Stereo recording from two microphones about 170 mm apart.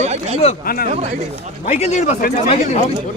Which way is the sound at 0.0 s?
40° right (ahead or behind).